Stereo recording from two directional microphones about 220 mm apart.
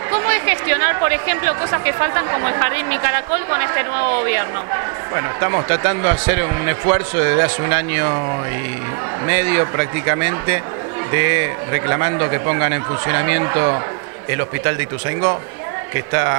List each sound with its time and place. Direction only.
0.1 s speech: 15° right (ahead or behind)
9.3 s speech: 15° right (ahead or behind)